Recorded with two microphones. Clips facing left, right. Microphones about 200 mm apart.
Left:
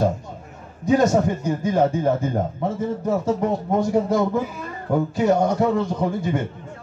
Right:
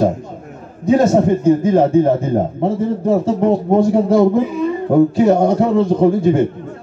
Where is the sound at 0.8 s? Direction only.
25° right (ahead or behind).